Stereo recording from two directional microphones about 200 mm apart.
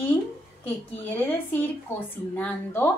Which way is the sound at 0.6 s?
10° left (ahead or behind).